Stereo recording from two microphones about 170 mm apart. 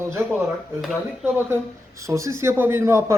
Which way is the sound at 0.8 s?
5° right (ahead or behind).